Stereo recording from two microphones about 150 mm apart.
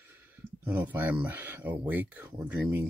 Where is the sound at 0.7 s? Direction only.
10° right (ahead or behind).